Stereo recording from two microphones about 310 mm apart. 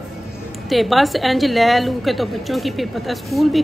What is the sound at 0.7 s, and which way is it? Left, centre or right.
A woman's voice, centre.